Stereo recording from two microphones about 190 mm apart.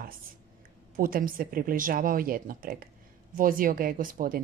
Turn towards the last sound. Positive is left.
turn(degrees=-50)  # may be behind; listen again after turning